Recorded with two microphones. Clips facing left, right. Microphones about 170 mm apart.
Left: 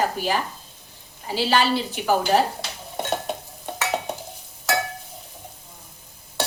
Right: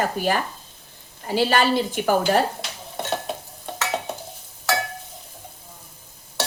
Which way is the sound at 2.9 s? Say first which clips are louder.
Left 1 dB; 10° left (ahead or behind).